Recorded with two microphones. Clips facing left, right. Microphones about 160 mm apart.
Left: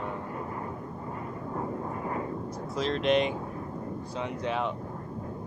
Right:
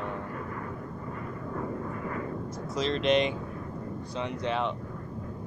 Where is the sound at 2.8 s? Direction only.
5° left (ahead or behind).